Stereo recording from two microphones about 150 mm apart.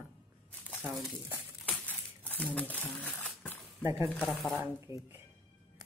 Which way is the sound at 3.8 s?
15° right (ahead or behind).